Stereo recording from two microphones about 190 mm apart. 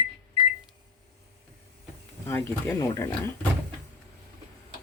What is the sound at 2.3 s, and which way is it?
Speech, 10° left (ahead or behind).